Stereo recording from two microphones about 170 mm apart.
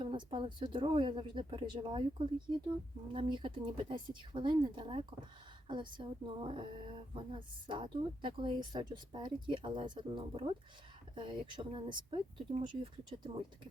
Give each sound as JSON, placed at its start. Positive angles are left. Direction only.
{"t": 0.0, "sound": "a woman's voice", "side_deg": -30}